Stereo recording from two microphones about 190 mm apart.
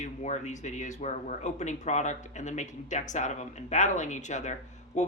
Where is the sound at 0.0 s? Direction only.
40° left (ahead or behind).